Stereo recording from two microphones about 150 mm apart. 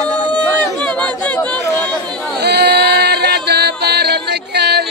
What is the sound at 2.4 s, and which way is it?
Music, 90° right.